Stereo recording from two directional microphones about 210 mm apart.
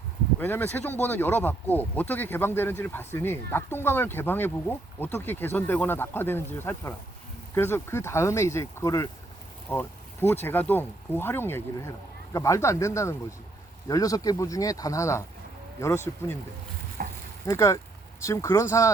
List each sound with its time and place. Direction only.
0.3 s speech: 10° left (ahead or behind)
9.6 s boat: 10° left (ahead or behind)
10.4 s speech: 10° left (ahead or behind)
17.0 s frying: 45° right (ahead or behind)
17.4 s speech: 15° left (ahead or behind)